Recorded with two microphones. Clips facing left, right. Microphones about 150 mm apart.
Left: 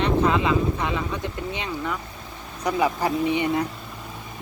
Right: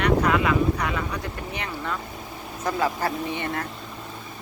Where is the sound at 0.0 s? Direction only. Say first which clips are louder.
Even; 25° left (ahead or behind).